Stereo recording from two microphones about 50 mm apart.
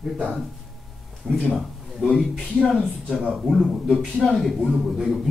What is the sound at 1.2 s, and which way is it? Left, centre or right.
Speech, centre.